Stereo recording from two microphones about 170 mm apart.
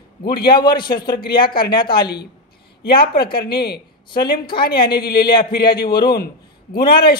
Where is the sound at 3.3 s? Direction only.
70° left (ahead or behind).